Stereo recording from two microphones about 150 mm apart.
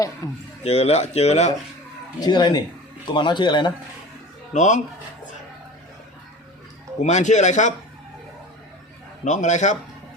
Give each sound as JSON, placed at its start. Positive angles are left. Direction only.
{"t": 0.2, "sound": "speech", "side_deg": 25}
{"t": 0.6, "sound": "speech", "side_deg": 45}
{"t": 2.1, "sound": "a man's voice", "side_deg": 30}
{"t": 4.5, "sound": "speech", "side_deg": 55}
{"t": 7.0, "sound": "speech", "side_deg": 50}
{"t": 9.2, "sound": "speech", "side_deg": 55}